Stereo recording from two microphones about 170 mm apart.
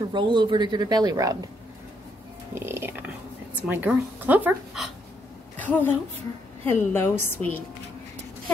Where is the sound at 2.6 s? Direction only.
15° right (ahead or behind).